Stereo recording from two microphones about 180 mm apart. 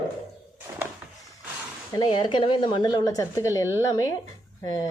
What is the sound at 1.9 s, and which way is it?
A woman's voice, 25° left (ahead or behind).